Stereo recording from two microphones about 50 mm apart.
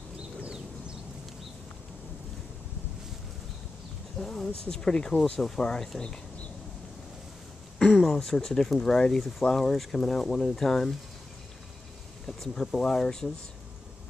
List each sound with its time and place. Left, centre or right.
0.4 s a sound: centre
4.2 s speech: centre
8.0 s speech: centre
12.3 s speech: centre